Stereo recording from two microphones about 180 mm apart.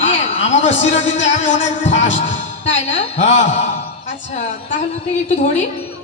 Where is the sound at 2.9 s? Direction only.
35° left (ahead or behind).